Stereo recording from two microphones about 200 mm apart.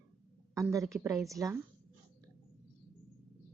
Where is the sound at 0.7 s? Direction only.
15° right (ahead or behind).